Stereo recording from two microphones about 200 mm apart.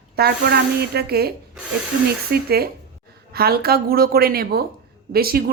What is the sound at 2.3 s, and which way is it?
A woman's voice, 50° right (ahead or behind).